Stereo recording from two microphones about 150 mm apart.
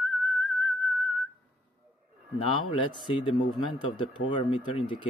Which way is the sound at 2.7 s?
35° left (ahead or behind).